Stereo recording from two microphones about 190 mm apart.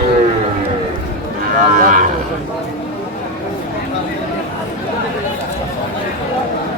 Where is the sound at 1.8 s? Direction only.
45° right (ahead or behind).